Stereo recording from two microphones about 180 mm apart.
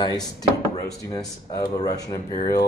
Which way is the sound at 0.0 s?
20° left (ahead or behind).